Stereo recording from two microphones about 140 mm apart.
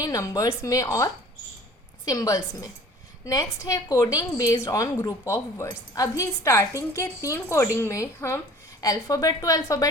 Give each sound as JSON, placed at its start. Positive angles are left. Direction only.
{"t": 0.0, "sound": "a woman's voice", "side_deg": 25}